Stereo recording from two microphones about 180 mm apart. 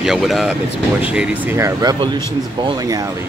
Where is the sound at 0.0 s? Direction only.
Centre (ahead or behind); by 3.1 s 20° right (ahead or behind).